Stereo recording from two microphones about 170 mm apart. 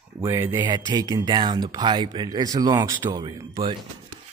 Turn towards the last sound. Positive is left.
turn(degrees=-25)  # may be behind; listen again after turning